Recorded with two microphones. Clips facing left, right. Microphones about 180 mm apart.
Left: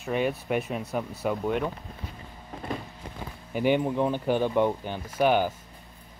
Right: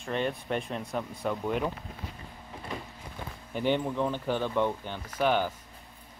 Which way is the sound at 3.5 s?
10° left (ahead or behind).